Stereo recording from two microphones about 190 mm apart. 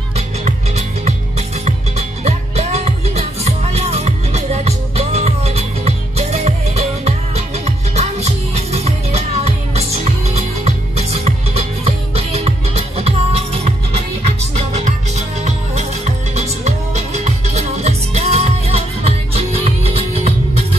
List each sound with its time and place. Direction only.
0.5 s music: 35° right (ahead or behind)